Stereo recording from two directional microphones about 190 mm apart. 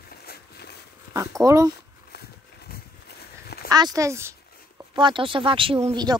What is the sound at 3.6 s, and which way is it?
Speech, 20° right (ahead or behind).